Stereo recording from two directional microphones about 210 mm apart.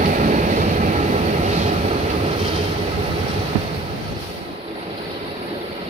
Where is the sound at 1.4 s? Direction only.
35° right (ahead or behind).